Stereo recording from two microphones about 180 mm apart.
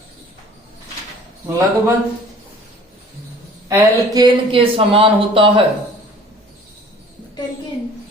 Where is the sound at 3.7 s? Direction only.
20° right (ahead or behind).